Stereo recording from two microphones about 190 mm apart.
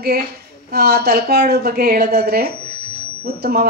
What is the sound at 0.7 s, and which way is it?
A man's voice, 55° right (ahead or behind).